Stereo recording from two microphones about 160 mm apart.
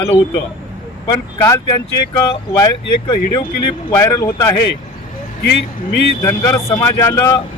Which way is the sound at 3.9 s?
15° left (ahead or behind).